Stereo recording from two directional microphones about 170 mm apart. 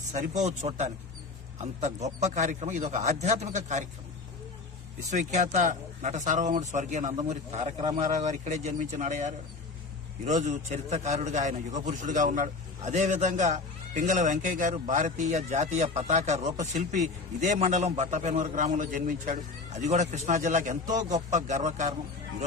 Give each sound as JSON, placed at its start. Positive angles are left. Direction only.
{"t": 0.1, "sound": "a man's voice", "side_deg": -45}
{"t": 2.2, "sound": "a man's voice", "side_deg": -45}
{"t": 5.1, "sound": "a man's voice", "side_deg": -45}